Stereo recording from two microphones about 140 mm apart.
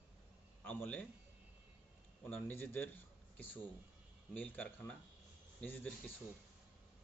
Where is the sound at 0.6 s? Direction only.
15° left (ahead or behind).